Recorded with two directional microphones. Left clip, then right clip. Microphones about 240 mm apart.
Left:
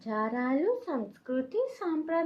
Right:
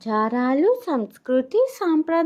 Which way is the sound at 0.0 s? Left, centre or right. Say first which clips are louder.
Right 9 dB; right.